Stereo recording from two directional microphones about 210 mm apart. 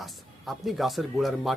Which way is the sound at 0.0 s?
Centre (ahead or behind).